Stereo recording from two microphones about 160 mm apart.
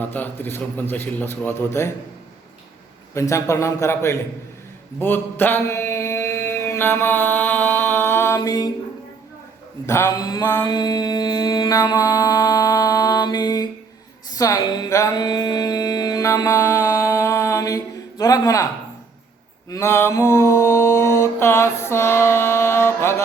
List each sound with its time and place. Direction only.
0.1 s mantra: 10° left (ahead or behind)
3.2 s a man's voice: 20° left (ahead or behind)
4.9 s mantra: 10° left (ahead or behind)
9.8 s a man's voice: 20° left (ahead or behind)
10.5 s mantra: 25° left (ahead or behind)
14.3 s music: 20° left (ahead or behind)
19.7 s mantra: 15° left (ahead or behind)